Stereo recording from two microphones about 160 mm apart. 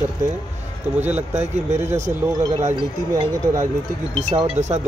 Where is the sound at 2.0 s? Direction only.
25° right (ahead or behind).